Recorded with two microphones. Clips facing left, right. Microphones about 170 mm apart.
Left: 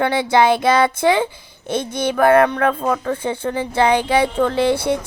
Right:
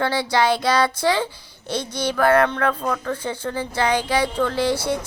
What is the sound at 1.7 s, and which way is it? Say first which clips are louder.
Speech: left 4 dB; 55° left (ahead or behind).